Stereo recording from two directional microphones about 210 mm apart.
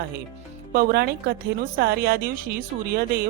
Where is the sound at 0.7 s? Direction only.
45° right (ahead or behind).